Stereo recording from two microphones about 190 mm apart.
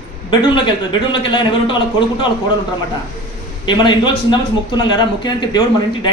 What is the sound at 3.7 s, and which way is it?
A man's voice, 25° left (ahead or behind).